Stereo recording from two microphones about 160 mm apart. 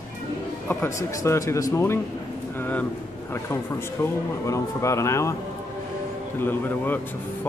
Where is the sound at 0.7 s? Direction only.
15° left (ahead or behind).